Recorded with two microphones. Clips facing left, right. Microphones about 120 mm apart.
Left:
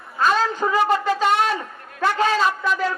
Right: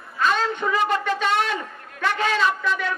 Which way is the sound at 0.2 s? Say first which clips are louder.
Left 3 dB; 35° left (ahead or behind).